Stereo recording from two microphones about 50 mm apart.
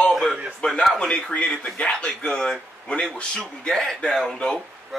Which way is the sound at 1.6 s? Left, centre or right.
Centre.